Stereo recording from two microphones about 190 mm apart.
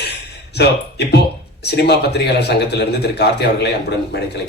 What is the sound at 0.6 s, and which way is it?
A man's voice, 60° left (ahead or behind).